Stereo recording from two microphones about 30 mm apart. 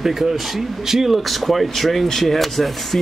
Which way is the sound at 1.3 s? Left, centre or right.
Centre.